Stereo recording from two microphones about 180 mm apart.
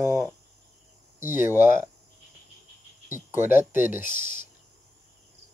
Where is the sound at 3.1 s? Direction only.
10° right (ahead or behind).